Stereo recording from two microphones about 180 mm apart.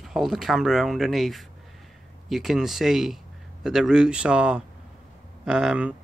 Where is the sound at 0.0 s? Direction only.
Centre (ahead or behind).